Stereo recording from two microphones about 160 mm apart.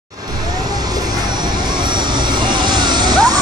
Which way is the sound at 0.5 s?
25° right (ahead or behind).